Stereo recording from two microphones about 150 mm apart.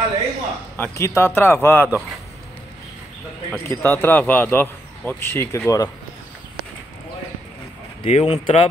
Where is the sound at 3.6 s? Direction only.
15° left (ahead or behind).